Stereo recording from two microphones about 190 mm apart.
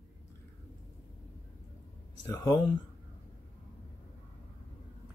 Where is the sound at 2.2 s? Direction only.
20° left (ahead or behind).